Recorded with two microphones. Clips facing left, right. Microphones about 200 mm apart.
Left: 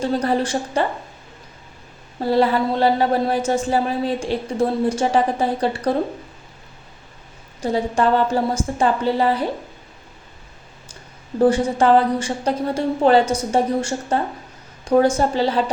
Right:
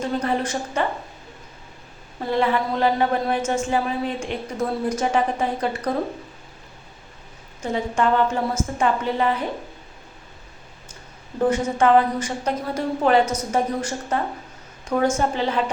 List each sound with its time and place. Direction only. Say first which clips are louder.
0.0 s a woman's voice: left 4 dB; 35° left (ahead or behind)
2.2 s a woman's voice: left 4 dB; 35° left (ahead or behind)
7.6 s a woman's voice: left 3 dB; 35° left (ahead or behind)
11.4 s a woman's voice: left 3 dB; 35° left (ahead or behind)